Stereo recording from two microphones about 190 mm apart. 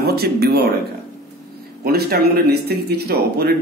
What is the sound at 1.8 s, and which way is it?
Speech, 55° right (ahead or behind).